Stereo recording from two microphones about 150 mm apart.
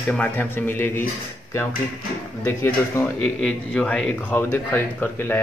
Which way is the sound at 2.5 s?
15° left (ahead or behind).